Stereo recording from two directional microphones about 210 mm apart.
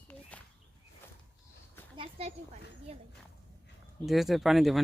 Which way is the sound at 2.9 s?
30° right (ahead or behind).